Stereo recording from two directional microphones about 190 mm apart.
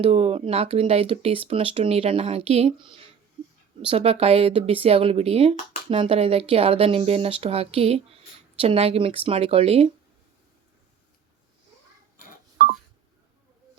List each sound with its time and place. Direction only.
0.0 s speech: 30° right (ahead or behind)